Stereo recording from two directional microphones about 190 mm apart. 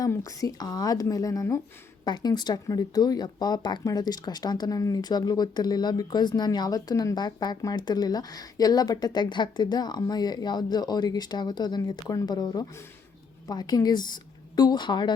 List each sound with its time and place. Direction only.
0.0 s speech: 15° left (ahead or behind)